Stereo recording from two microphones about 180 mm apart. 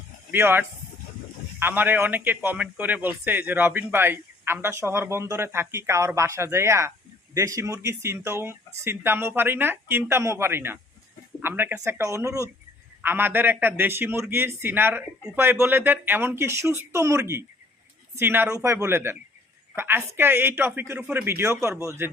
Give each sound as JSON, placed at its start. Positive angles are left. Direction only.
{"t": 0.3, "sound": "a man's voice", "side_deg": -10}